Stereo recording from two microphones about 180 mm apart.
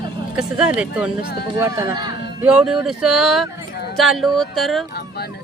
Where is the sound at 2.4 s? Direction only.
5° right (ahead or behind).